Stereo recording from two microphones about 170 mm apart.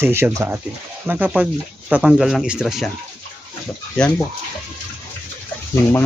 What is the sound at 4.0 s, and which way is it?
Speech, 5° left (ahead or behind).